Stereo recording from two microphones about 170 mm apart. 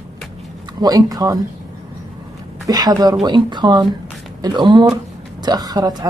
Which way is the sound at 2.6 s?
20° right (ahead or behind).